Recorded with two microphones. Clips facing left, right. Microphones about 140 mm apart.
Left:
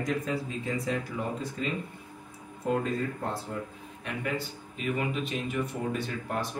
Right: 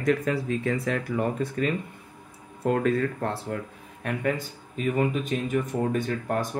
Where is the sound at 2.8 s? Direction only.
75° right (ahead or behind).